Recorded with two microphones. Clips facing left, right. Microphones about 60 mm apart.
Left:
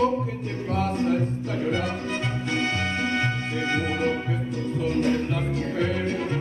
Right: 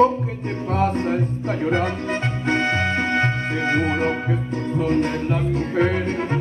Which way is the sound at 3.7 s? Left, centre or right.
Right.